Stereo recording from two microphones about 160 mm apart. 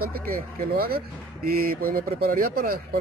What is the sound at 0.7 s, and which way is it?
Speech, 70° right (ahead or behind).